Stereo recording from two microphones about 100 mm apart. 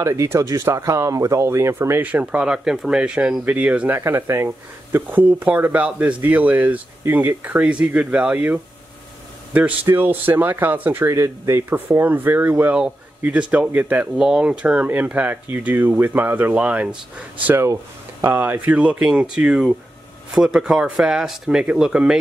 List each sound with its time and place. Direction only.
0.0 s speech: 30° right (ahead or behind); by 4.0 s 15° right (ahead or behind)
4.0 s speech: 25° right (ahead or behind)
14.1 s speech: 5° right (ahead or behind)
17.5 s speech: 25° right (ahead or behind)
18.8 s speech: 10° right (ahead or behind)